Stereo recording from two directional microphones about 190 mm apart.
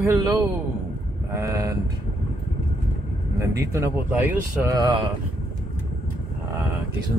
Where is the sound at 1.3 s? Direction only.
15° right (ahead or behind).